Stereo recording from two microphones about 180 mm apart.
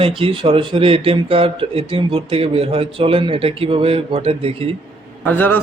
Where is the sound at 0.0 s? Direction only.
30° right (ahead or behind).